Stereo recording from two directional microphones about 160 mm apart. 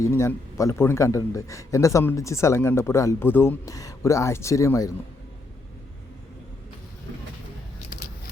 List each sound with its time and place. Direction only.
0.0 s a man's voice: 15° left (ahead or behind)